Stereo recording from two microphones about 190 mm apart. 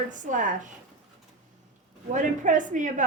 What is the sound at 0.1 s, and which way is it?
Speech, 40° right (ahead or behind).